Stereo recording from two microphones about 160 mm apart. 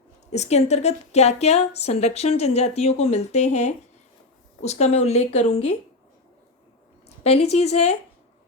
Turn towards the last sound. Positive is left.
turn(degrees=40)  # may be behind; listen again after turning